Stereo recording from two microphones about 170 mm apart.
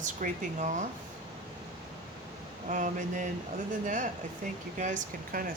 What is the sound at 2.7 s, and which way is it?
Speech, 50° right (ahead or behind).